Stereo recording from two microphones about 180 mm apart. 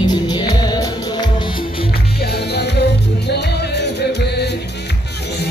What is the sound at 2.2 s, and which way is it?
Music, 65° left (ahead or behind).